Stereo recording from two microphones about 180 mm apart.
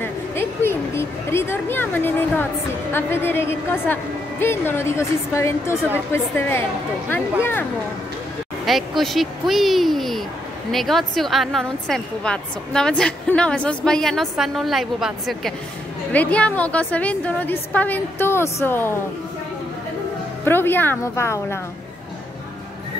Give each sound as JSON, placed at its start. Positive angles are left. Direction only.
{"t": 0.0, "sound": "a sound", "side_deg": 15}
{"t": 2.9, "sound": "a woman's voice", "side_deg": 10}
{"t": 8.6, "sound": "a woman's voice", "side_deg": 0}
{"t": 20.4, "sound": "a woman's voice", "side_deg": 10}